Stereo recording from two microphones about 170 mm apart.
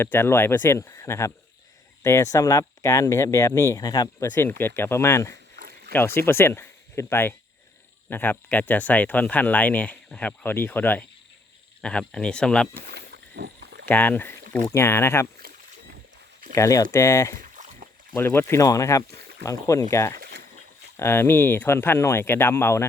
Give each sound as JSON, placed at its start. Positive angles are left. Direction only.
{"t": 0.0, "sound": "speech", "side_deg": 10}
{"t": 5.5, "sound": "a sound", "side_deg": -65}
{"t": 5.9, "sound": "speech", "side_deg": 15}
{"t": 12.9, "sound": "a sound", "side_deg": -75}
{"t": 13.8, "sound": "speech", "side_deg": 10}
{"t": 15.4, "sound": "rowboat", "side_deg": -60}
{"t": 16.6, "sound": "speech", "side_deg": 20}
{"t": 17.3, "sound": "rowboat", "side_deg": -50}
{"t": 18.2, "sound": "speech", "side_deg": 15}
{"t": 20.1, "sound": "a sound", "side_deg": -65}
{"t": 20.9, "sound": "speech", "side_deg": 15}